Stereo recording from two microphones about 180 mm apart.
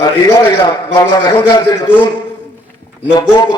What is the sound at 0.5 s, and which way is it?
Speech, 25° left (ahead or behind).